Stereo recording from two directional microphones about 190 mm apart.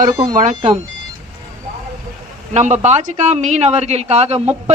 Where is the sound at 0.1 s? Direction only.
20° right (ahead or behind).